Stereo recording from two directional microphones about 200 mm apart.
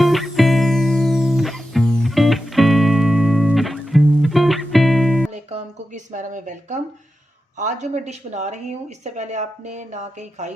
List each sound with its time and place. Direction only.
0.0 s music: centre (ahead or behind)
5.3 s a sound: 35° right (ahead or behind)
7.6 s a woman's voice: 35° right (ahead or behind)